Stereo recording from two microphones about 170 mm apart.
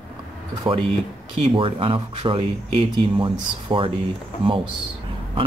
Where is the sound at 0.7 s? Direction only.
35° right (ahead or behind).